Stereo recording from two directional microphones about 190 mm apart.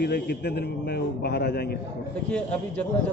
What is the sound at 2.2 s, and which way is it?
Speech, 5° left (ahead or behind).